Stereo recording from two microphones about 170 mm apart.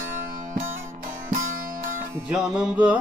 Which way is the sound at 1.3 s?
55° right (ahead or behind).